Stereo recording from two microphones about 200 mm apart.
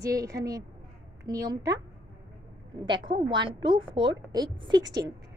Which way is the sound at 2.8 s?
25° right (ahead or behind).